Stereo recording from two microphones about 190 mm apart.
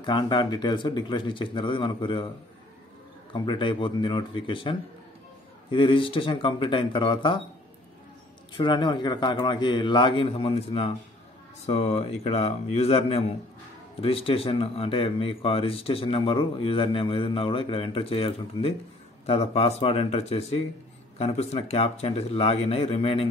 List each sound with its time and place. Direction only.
0.0 s speech: 25° left (ahead or behind)
3.3 s speech: 25° left (ahead or behind)
8.5 s speech: 25° left (ahead or behind)